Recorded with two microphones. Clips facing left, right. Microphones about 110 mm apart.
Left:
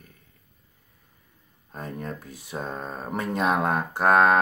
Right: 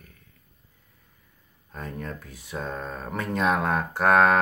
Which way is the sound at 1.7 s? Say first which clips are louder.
Left 1 dB; 20° left (ahead or behind).